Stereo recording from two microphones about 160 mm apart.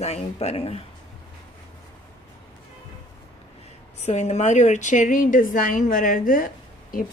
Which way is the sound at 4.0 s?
45° left (ahead or behind).